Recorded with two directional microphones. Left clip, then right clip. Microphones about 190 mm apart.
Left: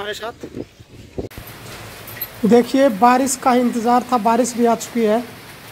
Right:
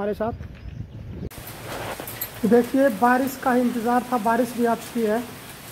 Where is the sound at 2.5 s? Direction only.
50° left (ahead or behind).